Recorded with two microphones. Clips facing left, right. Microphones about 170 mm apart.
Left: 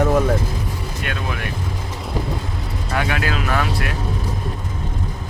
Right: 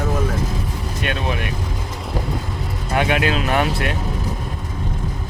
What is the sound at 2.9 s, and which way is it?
Speech, 20° right (ahead or behind).